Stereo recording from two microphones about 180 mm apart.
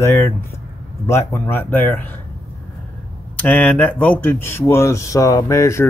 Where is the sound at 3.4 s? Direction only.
10° left (ahead or behind).